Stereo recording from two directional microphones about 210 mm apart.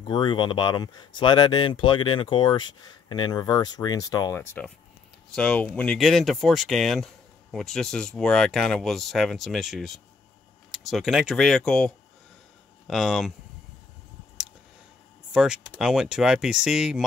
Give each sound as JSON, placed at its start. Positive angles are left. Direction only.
{"t": 0.0, "sound": "speech", "side_deg": 20}
{"t": 15.3, "sound": "speech", "side_deg": -5}